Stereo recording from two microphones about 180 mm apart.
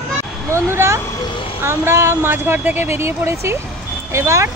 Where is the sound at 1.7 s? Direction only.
15° right (ahead or behind).